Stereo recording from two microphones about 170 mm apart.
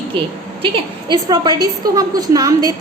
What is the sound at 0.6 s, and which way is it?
A woman's voice, 25° right (ahead or behind).